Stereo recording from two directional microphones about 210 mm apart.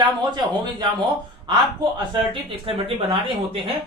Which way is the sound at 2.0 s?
25° right (ahead or behind).